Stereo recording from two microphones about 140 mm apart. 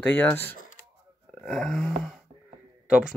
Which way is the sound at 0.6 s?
75° left (ahead or behind).